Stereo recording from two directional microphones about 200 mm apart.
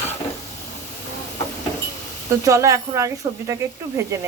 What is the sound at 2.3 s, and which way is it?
Speech, 15° right (ahead or behind).